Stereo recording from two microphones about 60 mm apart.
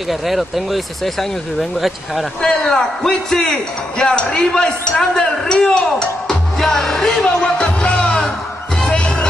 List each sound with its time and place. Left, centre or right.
0.3 s speech: centre
8.8 s music: centre